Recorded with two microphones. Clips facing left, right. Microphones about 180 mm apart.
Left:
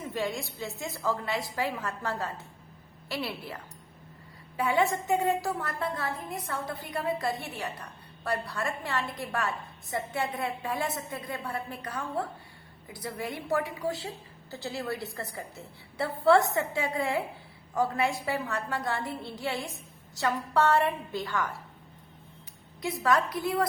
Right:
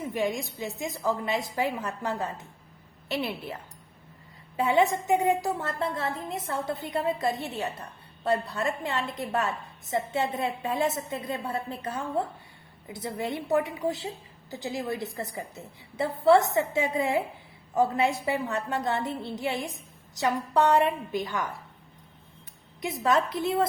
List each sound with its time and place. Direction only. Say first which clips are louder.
0.1 s a woman's voice: right 3 dB; 15° right (ahead or behind)
22.8 s a woman's voice: right 1 dB; 20° right (ahead or behind)